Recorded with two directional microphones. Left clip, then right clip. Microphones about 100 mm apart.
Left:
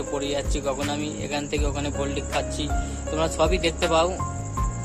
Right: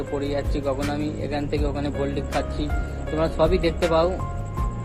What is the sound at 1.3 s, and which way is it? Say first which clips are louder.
Speech: even; 50° left (ahead or behind).